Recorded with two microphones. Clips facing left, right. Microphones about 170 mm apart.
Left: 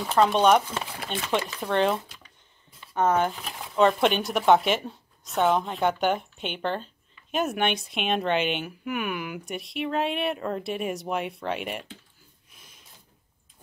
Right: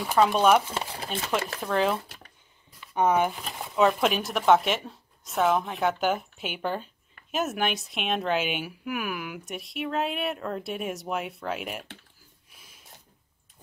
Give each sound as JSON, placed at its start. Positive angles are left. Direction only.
{"t": 0.0, "sound": "speech", "side_deg": -5}
{"t": 2.0, "sound": "a sound", "side_deg": -55}
{"t": 2.9, "sound": "speech", "side_deg": -10}